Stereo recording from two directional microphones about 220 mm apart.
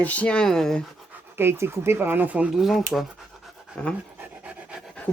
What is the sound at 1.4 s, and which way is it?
Speech, 10° right (ahead or behind).